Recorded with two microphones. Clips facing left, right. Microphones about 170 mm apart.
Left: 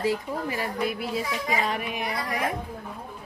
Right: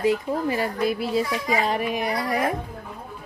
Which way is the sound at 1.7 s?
40° right (ahead or behind).